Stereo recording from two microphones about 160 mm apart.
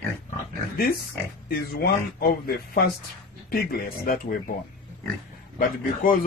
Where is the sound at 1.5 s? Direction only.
70° left (ahead or behind).